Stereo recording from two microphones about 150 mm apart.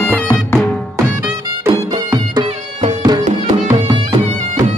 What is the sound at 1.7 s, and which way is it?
Music, 30° right (ahead or behind).